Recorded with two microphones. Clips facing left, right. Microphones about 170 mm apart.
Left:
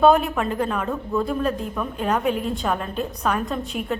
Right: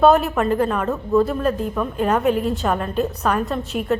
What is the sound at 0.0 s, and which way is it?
A woman's voice, centre (ahead or behind).